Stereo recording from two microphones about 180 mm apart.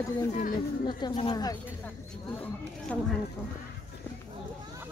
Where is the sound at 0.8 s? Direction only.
25° left (ahead or behind).